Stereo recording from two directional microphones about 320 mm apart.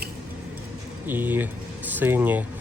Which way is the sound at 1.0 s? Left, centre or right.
Centre.